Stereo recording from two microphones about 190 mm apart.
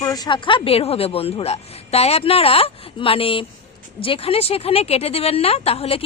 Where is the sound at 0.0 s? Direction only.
20° left (ahead or behind).